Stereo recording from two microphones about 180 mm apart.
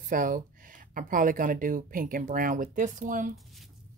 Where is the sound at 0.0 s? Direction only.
45° right (ahead or behind).